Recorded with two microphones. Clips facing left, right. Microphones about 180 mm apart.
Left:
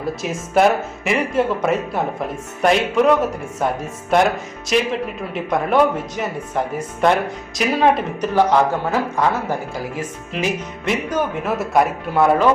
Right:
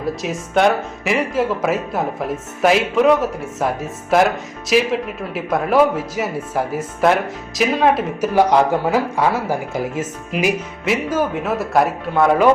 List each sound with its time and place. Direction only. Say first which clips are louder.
0.0 s speech: right 1 dB; centre (ahead or behind)
8.4 s a man's voice: right 1 dB; 10° right (ahead or behind)
9.7 s speech: right 4 dB; 20° right (ahead or behind)
10.3 s speech: right 3 dB; 5° right (ahead or behind)